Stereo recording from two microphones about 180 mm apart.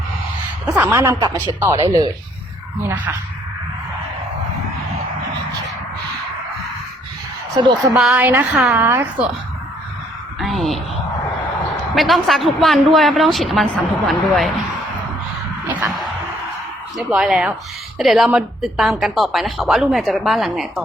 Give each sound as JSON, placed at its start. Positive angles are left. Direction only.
{"t": 0.6, "sound": "a woman's voice", "side_deg": -10}
{"t": 7.9, "sound": "a woman's voice", "side_deg": -5}
{"t": 10.4, "sound": "speech", "side_deg": 0}
{"t": 11.9, "sound": "a woman's voice", "side_deg": 0}
{"t": 15.6, "sound": "a sound", "side_deg": -15}
{"t": 17.1, "sound": "a woman's voice", "side_deg": -5}